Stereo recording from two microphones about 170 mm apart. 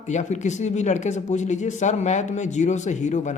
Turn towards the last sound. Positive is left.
turn(degrees=45)  # may be behind; listen again after turning